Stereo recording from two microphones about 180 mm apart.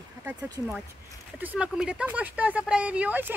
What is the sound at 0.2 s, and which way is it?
Speech, 10° right (ahead or behind).